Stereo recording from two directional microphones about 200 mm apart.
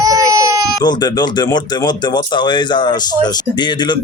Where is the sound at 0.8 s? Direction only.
20° left (ahead or behind).